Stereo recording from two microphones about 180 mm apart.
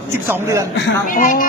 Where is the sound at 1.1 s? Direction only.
50° left (ahead or behind).